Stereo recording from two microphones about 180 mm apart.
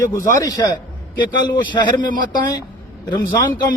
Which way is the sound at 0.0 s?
15° left (ahead or behind).